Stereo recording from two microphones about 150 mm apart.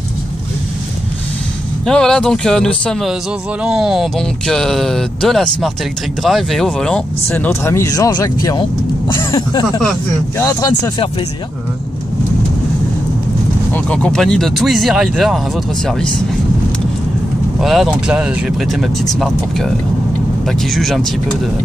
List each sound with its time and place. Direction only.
1.9 s speech: 5° left (ahead or behind)
7.2 s speech: 15° left (ahead or behind)
13.7 s speech: 5° left (ahead or behind)
17.6 s speech: centre (ahead or behind)